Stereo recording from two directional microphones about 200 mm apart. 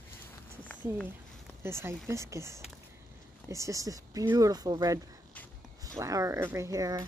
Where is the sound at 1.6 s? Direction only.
15° right (ahead or behind).